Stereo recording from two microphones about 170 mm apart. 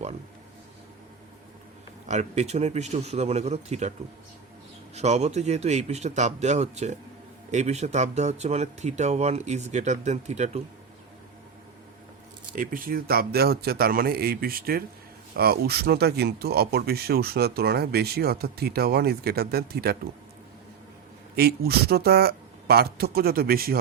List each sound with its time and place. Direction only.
2.0 s speech: 40° right (ahead or behind)
4.9 s speech: 40° right (ahead or behind)
12.5 s speech: 55° right (ahead or behind)
21.3 s speech: 70° right (ahead or behind)